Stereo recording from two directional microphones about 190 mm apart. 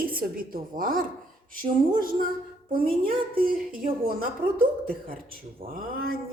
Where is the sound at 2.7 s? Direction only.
50° right (ahead or behind).